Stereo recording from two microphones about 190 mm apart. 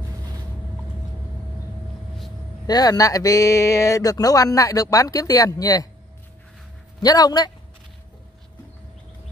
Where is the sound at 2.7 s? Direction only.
20° left (ahead or behind).